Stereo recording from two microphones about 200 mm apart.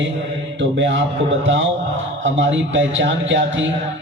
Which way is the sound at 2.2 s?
70° right (ahead or behind).